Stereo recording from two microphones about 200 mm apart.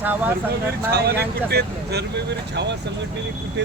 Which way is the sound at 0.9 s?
55° right (ahead or behind).